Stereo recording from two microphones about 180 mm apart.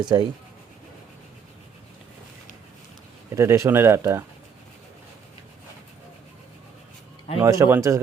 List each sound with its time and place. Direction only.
0.0 s speech: 25° right (ahead or behind)
3.3 s speech: 15° right (ahead or behind)
7.4 s speech: 15° right (ahead or behind)